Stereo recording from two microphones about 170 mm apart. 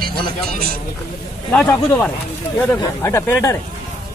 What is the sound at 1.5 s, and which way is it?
Speech, 10° left (ahead or behind).